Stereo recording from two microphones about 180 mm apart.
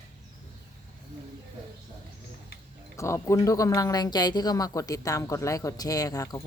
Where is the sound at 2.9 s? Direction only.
15° left (ahead or behind).